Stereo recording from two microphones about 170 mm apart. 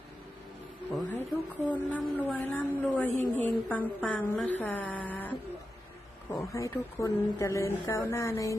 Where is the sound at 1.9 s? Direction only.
10° left (ahead or behind).